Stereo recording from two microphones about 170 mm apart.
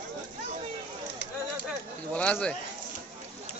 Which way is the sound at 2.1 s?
10° left (ahead or behind).